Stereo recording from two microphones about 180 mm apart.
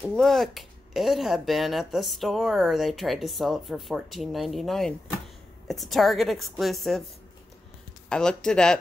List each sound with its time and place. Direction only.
0.0 s speech: centre (ahead or behind)
8.1 s speech: 5° left (ahead or behind)